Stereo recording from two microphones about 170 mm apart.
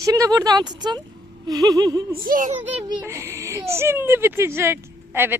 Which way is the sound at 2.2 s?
55° right (ahead or behind).